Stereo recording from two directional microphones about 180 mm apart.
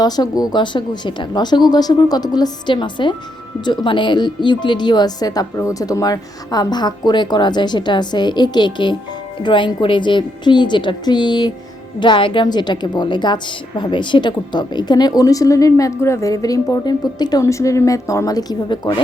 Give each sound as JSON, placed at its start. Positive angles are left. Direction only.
{"t": 0.0, "sound": "a woman's voice", "side_deg": 20}